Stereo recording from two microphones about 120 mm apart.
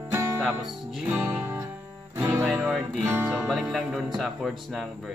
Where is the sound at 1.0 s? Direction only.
15° right (ahead or behind).